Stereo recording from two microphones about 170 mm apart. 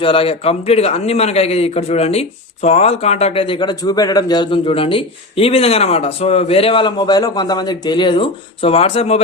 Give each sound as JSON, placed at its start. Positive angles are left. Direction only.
{"t": 0.0, "sound": "a man's voice", "side_deg": 35}